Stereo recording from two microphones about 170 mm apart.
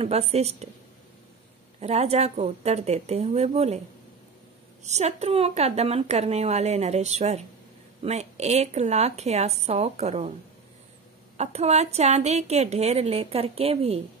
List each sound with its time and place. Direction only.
0.0 s a woman's voice: 40° right (ahead or behind)
1.8 s a woman's voice: 40° right (ahead or behind)
4.8 s a woman's voice: 40° right (ahead or behind)
11.3 s a woman's voice: 40° right (ahead or behind)